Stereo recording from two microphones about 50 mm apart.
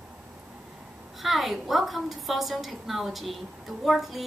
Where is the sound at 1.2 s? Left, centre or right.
Centre.